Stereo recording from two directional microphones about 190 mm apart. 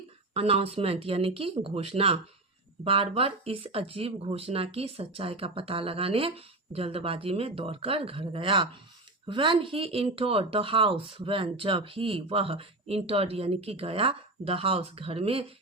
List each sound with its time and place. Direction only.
0.3 s speech: 30° right (ahead or behind)